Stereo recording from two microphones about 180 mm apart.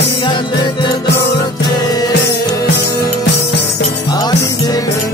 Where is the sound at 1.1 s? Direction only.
70° left (ahead or behind).